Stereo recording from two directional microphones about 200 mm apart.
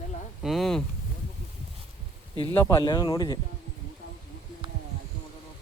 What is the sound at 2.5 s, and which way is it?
Speech, 15° left (ahead or behind).